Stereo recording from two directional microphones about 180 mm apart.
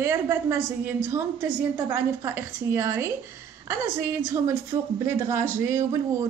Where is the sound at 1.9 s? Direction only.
15° right (ahead or behind).